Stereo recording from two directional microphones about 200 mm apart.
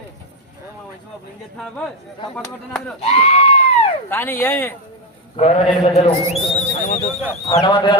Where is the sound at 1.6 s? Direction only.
Centre (ahead or behind).